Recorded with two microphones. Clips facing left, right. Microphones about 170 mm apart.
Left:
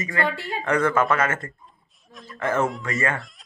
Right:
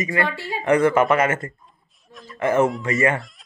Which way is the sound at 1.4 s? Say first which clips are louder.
Right 4 dB; centre (ahead or behind).